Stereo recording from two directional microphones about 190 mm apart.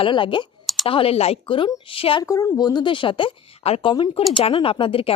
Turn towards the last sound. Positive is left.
turn(degrees=30)  # may be behind; listen again after turning